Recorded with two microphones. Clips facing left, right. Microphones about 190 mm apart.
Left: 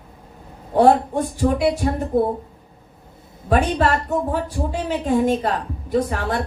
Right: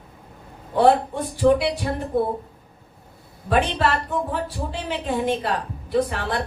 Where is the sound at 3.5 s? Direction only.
45° left (ahead or behind).